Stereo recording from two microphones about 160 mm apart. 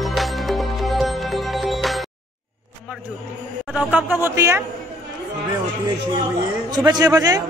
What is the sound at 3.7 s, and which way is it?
Speech, 10° right (ahead or behind).